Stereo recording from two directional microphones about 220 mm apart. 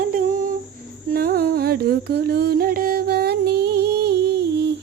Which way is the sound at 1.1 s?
45° right (ahead or behind).